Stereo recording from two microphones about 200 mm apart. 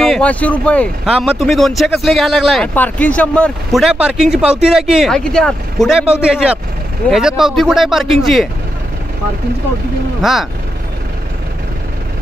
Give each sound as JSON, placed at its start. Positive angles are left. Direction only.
{"t": 0.0, "sound": "speech", "side_deg": 5}
{"t": 1.0, "sound": "speech", "side_deg": -5}
{"t": 10.2, "sound": "speech", "side_deg": 0}